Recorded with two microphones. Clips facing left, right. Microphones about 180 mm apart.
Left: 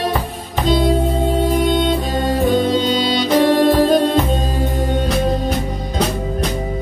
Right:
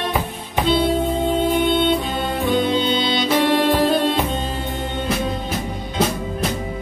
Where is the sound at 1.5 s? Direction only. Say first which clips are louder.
Left 1 dB; 40° left (ahead or behind).